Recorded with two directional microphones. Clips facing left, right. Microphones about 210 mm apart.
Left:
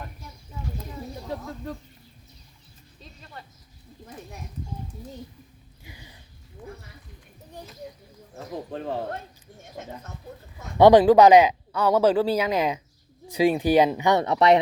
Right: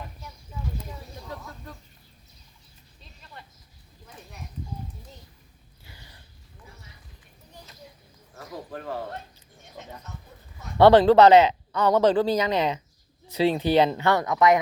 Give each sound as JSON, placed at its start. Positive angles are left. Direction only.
{"t": 5.8, "sound": "a sound", "side_deg": 15}
{"t": 8.7, "sound": "speech", "side_deg": 25}
{"t": 10.8, "sound": "speech", "side_deg": 15}
{"t": 14.2, "sound": "speech", "side_deg": 30}